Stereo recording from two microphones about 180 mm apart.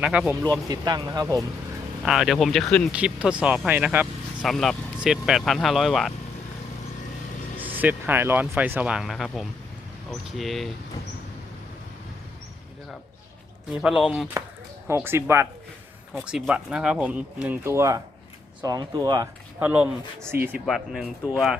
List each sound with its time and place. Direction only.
0.0 s speech: 5° right (ahead or behind)
0.7 s speech: 20° right (ahead or behind)
2.0 s speech: centre (ahead or behind)
7.6 s speech: 10° right (ahead or behind)
13.7 s speech: 5° right (ahead or behind)
14.8 s speech: 15° right (ahead or behind)
19.5 s speech: 10° right (ahead or behind)